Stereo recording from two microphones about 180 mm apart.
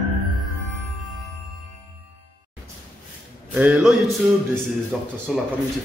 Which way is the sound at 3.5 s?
10° right (ahead or behind).